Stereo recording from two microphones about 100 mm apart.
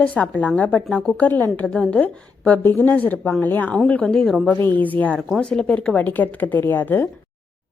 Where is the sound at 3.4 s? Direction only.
20° left (ahead or behind).